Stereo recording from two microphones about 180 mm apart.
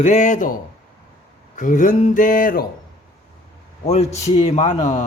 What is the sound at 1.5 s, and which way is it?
A man's voice, 45° left (ahead or behind).